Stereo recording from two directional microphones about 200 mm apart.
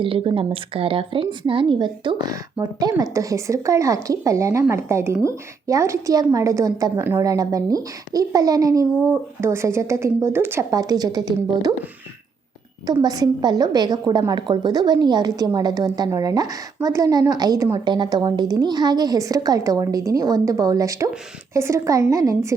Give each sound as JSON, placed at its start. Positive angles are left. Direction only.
{"t": 0.0, "sound": "a woman's voice", "side_deg": -25}
{"t": 12.8, "sound": "a woman's voice", "side_deg": -20}